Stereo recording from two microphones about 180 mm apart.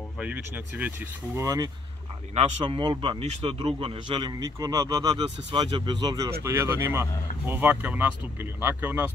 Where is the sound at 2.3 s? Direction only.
35° right (ahead or behind); by 9.1 s 10° right (ahead or behind).